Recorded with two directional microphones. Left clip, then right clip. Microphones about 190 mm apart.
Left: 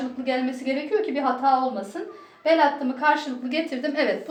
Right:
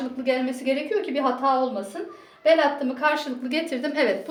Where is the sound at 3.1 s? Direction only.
45° right (ahead or behind).